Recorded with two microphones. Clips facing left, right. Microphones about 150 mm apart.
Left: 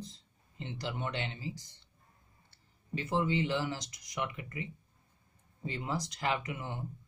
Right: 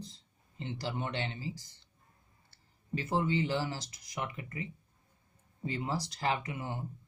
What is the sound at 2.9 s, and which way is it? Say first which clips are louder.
Speech: even; 35° right (ahead or behind).